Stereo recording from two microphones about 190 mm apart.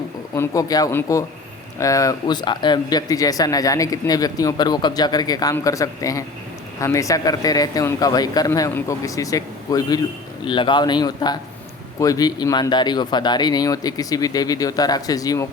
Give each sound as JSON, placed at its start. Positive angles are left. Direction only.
{"t": 0.3, "sound": "speech", "side_deg": 20}